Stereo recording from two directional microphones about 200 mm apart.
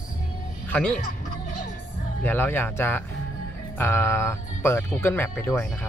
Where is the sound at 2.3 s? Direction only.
10° left (ahead or behind).